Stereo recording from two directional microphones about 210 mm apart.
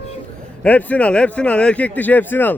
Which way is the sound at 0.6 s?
5° left (ahead or behind).